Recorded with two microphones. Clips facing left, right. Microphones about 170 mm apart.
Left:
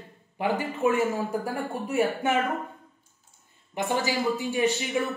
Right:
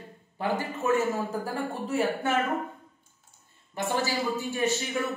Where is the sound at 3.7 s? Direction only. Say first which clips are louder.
Left 2 dB; 15° left (ahead or behind).